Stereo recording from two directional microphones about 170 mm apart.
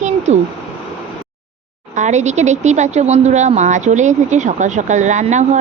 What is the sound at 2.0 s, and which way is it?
Speech, 45° right (ahead or behind).